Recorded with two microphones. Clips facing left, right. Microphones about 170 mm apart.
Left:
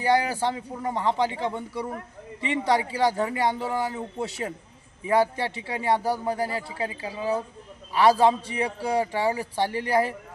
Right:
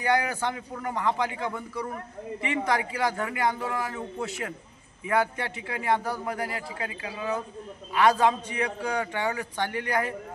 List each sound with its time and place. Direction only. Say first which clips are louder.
0.0 s a man's voice: left 3 dB; 30° left (ahead or behind)